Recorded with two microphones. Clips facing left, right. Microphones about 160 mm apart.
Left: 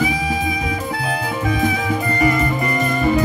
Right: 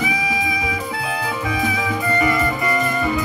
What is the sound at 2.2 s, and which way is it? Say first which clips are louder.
Music: left 4 dB; 45° left (ahead or behind).